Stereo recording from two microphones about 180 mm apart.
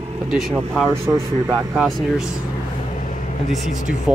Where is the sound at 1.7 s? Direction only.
Centre (ahead or behind).